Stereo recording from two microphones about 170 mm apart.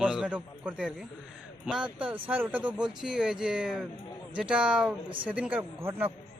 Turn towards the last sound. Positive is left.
turn(degrees=-15)  # may be behind; listen again after turning